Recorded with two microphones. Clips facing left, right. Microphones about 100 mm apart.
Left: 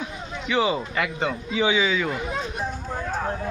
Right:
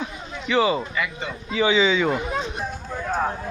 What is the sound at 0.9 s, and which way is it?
Speech, 85° left.